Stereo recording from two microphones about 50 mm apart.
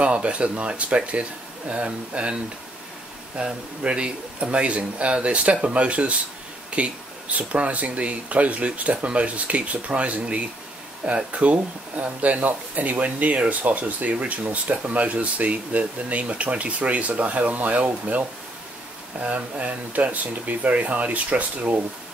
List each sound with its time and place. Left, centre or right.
0.0 s speech: right
3.3 s speech: right